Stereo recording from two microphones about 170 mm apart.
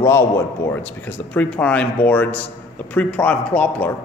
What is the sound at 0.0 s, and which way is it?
A man's voice, 15° left (ahead or behind).